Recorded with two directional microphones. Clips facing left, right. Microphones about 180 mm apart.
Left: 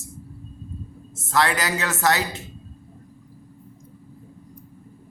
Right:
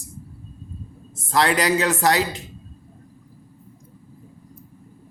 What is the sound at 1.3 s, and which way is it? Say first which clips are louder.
Speech: right 3 dB; 25° right (ahead or behind).